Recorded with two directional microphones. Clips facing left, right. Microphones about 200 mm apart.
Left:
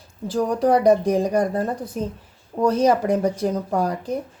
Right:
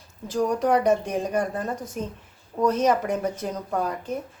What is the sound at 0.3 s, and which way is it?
Speech, 35° left (ahead or behind).